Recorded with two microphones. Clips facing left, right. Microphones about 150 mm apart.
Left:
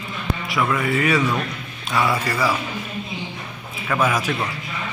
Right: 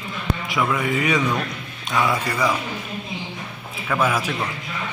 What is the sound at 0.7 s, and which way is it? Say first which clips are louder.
Speech: left 3 dB; 15° right (ahead or behind).